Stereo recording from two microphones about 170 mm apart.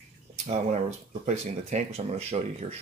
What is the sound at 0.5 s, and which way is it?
Speech, 45° right (ahead or behind).